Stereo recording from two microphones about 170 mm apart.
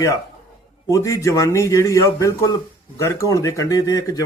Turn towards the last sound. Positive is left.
turn(degrees=20)  # may be behind; listen again after turning